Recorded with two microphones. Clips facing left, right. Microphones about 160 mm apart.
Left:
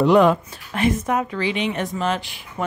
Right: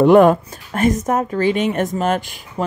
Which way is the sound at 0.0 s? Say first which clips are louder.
Right 5 dB; 50° right (ahead or behind).